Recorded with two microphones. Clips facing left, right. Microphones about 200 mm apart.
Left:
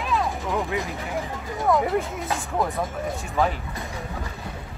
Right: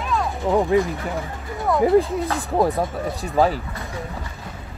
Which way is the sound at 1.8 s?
30° right (ahead or behind).